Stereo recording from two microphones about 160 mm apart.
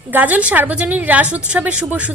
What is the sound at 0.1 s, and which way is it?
A woman's voice, 10° right (ahead or behind).